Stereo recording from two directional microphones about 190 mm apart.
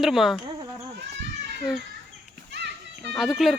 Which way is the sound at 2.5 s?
65° right (ahead or behind).